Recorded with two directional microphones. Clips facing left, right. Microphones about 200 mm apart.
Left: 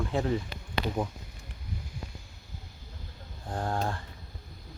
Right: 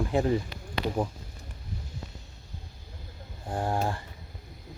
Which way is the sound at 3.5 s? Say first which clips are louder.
Right 2 dB; 10° right (ahead or behind).